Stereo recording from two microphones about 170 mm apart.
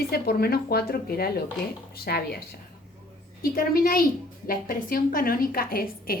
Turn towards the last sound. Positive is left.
turn(degrees=60)  # may be behind; listen again after turning